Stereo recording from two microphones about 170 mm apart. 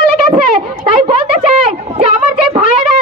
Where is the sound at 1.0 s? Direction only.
40° right (ahead or behind).